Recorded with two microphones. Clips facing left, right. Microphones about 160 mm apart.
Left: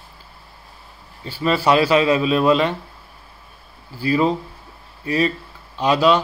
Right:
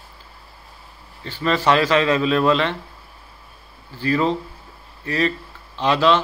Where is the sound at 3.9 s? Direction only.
10° left (ahead or behind).